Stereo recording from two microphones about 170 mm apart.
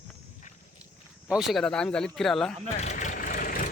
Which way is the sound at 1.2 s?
5° right (ahead or behind).